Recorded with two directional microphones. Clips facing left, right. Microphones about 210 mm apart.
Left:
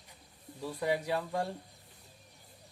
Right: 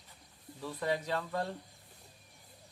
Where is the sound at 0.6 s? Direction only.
10° left (ahead or behind).